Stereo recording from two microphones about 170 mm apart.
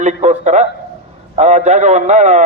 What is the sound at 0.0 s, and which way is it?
A man's voice, 45° right (ahead or behind).